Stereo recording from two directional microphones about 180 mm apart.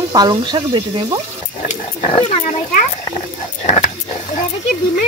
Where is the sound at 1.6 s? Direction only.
40° left (ahead or behind).